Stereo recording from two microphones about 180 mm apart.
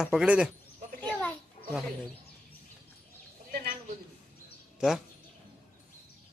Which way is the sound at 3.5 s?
55° right (ahead or behind).